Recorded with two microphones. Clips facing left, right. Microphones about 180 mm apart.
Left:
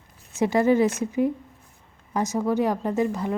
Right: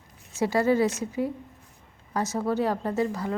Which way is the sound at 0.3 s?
20° left (ahead or behind).